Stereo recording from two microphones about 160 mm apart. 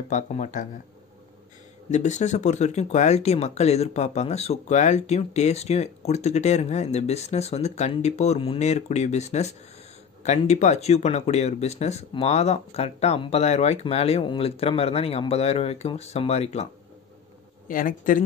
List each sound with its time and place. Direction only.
0.1 s speech: 50° left (ahead or behind)
1.9 s speech: 45° left (ahead or behind)
17.6 s a man's voice: 60° left (ahead or behind)